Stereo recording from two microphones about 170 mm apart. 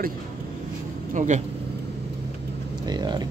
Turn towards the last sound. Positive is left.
turn(degrees=-25)  # may be behind; listen again after turning